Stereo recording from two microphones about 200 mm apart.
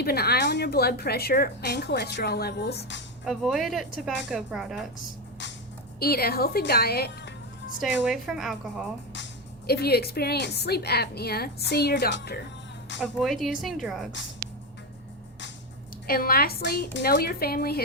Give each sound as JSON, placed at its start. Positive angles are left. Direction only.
{"t": 0.0, "sound": "a woman's voice", "side_deg": 50}
{"t": 3.2, "sound": "speech", "side_deg": 0}
{"t": 6.0, "sound": "a woman's voice", "side_deg": 50}
{"t": 7.8, "sound": "speech", "side_deg": 0}
{"t": 9.6, "sound": "a woman's voice", "side_deg": 50}
{"t": 13.0, "sound": "speech", "side_deg": 0}
{"t": 16.0, "sound": "a woman's voice", "side_deg": 50}